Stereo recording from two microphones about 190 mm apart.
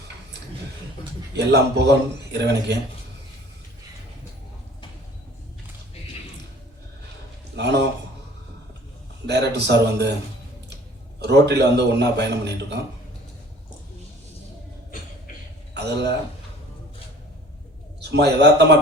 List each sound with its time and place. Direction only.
1.4 s a man's voice: 60° right (ahead or behind)
9.2 s a man's voice: 60° right (ahead or behind)
11.2 s a man's voice: 60° right (ahead or behind)
15.7 s a man's voice: 60° right (ahead or behind)
18.1 s a man's voice: 60° right (ahead or behind)